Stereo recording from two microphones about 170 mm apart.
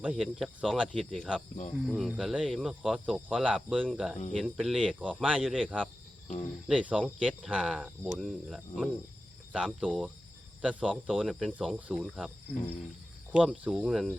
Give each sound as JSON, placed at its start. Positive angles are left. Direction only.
{"t": 0.0, "sound": "speech", "side_deg": 0}
{"t": 13.3, "sound": "speech", "side_deg": -5}